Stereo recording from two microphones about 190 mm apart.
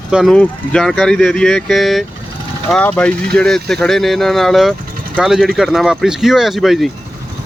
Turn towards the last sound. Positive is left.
turn(degrees=0)  # may be behind; listen again after turning